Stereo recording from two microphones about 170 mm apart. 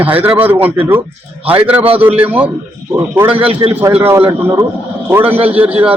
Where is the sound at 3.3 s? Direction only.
35° right (ahead or behind).